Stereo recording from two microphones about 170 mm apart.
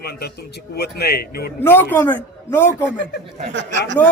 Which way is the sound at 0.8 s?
70° left (ahead or behind).